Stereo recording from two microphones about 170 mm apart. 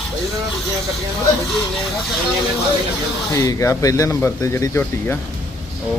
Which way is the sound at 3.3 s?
20° left (ahead or behind).